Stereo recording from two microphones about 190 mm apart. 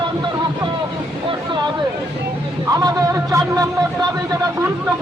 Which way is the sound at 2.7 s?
20° right (ahead or behind).